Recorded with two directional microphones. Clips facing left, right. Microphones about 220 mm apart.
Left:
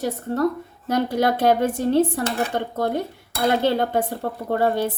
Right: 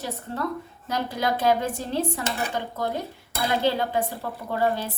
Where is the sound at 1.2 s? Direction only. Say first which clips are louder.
Left 3 dB; 55° left (ahead or behind).